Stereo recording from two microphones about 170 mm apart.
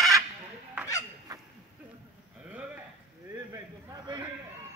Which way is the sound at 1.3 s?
20° right (ahead or behind).